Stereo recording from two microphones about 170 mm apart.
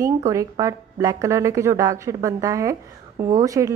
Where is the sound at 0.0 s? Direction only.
20° right (ahead or behind).